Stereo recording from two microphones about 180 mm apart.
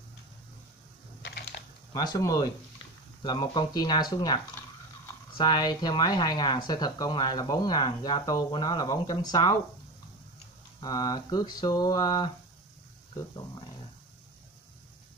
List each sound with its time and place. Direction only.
1.2 s typing: 60° left (ahead or behind)
1.9 s speech: 20° left (ahead or behind)
10.8 s speech: 20° left (ahead or behind)